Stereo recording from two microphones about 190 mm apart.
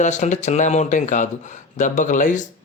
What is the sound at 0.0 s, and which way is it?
Speech, 40° left (ahead or behind).